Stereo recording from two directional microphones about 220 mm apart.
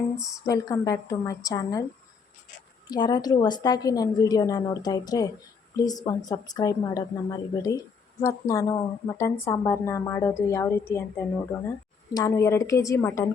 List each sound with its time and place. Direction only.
0.4 s a woman's voice: 15° left (ahead or behind)
2.9 s a woman's voice: 20° left (ahead or behind)